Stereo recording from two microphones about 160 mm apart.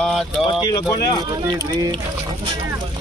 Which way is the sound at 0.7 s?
20° left (ahead or behind).